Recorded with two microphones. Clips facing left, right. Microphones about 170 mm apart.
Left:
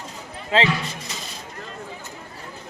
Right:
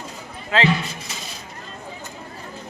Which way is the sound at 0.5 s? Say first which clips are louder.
Even; 30° left (ahead or behind).